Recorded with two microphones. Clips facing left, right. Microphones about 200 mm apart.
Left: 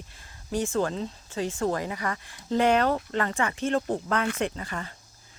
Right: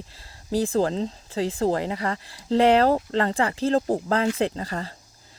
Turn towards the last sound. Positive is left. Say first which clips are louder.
# right 4 dB
turn(degrees=-35)  # may be behind; listen again after turning